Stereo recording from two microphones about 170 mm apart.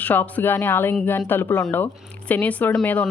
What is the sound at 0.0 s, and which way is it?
Speech, 10° left (ahead or behind).